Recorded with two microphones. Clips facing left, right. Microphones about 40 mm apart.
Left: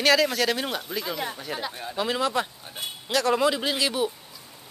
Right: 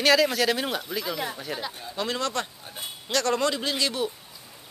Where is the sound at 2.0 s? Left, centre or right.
Centre.